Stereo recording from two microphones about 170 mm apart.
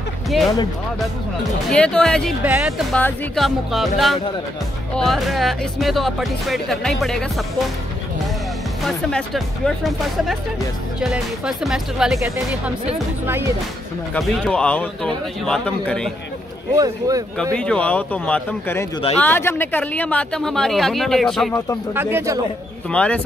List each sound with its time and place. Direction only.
0.3 s speech: centre (ahead or behind)
1.7 s speech: 5° left (ahead or behind)
8.8 s speech: centre (ahead or behind)
11.0 s speech: 5° right (ahead or behind)
14.1 s speech: 5° left (ahead or behind)
16.7 s speech: 20° right (ahead or behind)
17.4 s speech: 5° left (ahead or behind)
21.9 s speech: 15° right (ahead or behind)
22.8 s speech: 5° left (ahead or behind)